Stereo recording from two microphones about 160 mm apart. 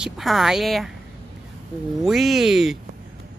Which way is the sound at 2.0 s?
Centre (ahead or behind).